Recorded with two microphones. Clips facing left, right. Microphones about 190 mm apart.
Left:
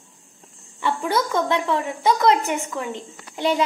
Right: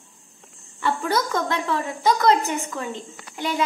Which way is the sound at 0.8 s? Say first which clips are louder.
Left 1 dB; 20° left (ahead or behind).